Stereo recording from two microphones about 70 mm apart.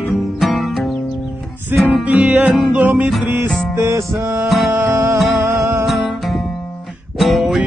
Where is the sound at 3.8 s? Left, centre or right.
Right.